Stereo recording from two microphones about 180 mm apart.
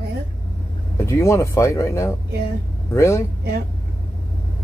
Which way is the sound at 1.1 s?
15° left (ahead or behind).